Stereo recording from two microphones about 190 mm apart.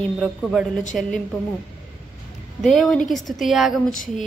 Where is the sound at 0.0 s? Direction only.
Centre (ahead or behind).